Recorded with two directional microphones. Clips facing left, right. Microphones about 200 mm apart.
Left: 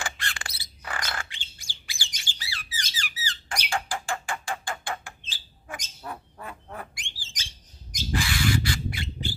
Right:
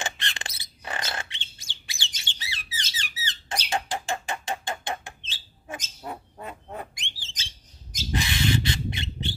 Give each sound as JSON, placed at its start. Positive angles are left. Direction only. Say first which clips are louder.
{"t": 0.0, "sound": "bird", "louder": "right 1 dB", "side_deg": -20}
{"t": 2.2, "sound": "squeak", "louder": "left 1 dB", "side_deg": -20}
{"t": 3.7, "sound": "a sound", "louder": "right 1 dB", "side_deg": -20}
{"t": 6.0, "sound": "bird", "louder": "right 2 dB", "side_deg": -20}